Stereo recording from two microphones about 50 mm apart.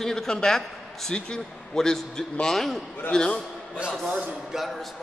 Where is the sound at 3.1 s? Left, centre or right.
Left.